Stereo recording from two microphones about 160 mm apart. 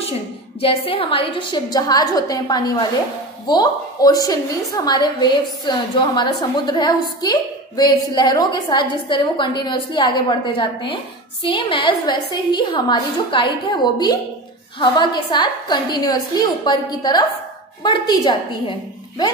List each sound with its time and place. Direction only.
0.6 s a woman's voice: 35° left (ahead or behind)